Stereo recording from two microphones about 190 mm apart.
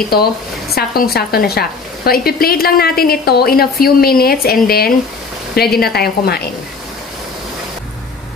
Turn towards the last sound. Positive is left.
turn(degrees=55)  # may be behind; listen again after turning